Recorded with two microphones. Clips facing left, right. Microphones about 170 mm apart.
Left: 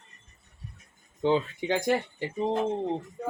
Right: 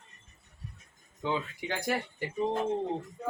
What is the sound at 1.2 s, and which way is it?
Speech, 30° left (ahead or behind).